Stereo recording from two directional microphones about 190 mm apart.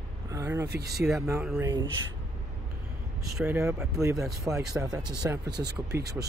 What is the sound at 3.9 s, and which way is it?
Speech, 15° right (ahead or behind).